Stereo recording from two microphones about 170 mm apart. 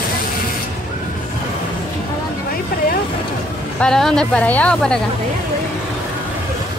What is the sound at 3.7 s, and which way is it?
Speech, 5° left (ahead or behind).